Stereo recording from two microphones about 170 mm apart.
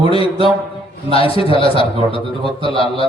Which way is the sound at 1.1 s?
30° left (ahead or behind).